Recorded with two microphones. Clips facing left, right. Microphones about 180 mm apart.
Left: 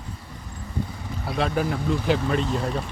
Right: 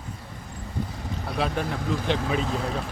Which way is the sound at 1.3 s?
Centre (ahead or behind).